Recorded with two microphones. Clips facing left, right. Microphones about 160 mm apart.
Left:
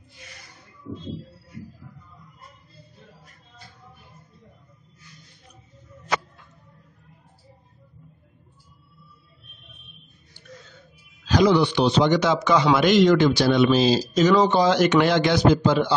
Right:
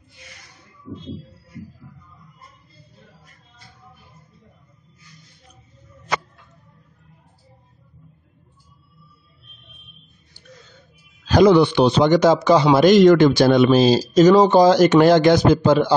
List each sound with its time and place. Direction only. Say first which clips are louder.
11.2 s speech: right 5 dB; 50° right (ahead or behind)